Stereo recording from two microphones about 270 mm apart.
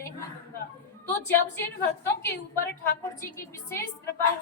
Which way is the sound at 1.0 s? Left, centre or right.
Centre.